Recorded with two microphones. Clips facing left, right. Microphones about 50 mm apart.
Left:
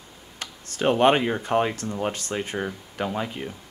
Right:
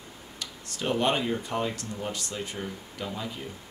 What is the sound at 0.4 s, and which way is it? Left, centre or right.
Speech, left.